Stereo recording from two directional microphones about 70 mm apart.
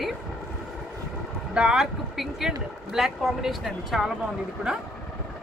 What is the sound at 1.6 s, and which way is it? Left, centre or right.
A woman's voice, centre.